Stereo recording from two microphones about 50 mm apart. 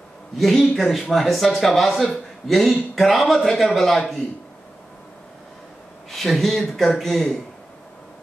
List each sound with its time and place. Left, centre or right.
0.4 s speech: centre
6.0 s speech: centre